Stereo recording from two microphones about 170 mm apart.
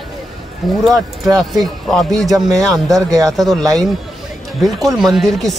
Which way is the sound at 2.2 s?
20° right (ahead or behind).